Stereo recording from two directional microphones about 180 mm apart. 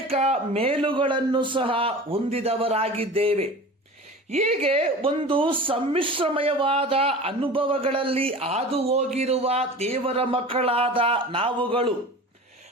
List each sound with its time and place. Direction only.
0.1 s speech: 35° right (ahead or behind)